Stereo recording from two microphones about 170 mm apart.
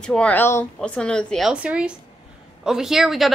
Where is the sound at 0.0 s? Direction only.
5° left (ahead or behind).